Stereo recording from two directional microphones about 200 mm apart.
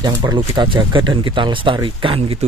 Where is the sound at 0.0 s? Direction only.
20° right (ahead or behind).